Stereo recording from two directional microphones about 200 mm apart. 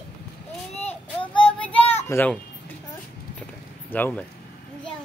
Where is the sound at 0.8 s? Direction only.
25° left (ahead or behind).